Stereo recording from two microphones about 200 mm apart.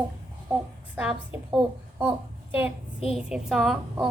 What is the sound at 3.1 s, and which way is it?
Speech, centre (ahead or behind).